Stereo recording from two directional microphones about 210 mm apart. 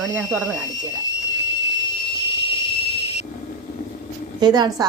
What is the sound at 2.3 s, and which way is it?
Whistle, 25° left (ahead or behind).